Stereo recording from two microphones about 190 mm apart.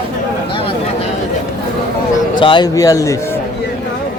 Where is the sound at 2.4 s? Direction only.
25° left (ahead or behind).